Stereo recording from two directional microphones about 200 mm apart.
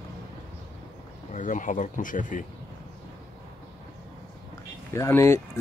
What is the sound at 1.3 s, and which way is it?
Speech, 40° left (ahead or behind).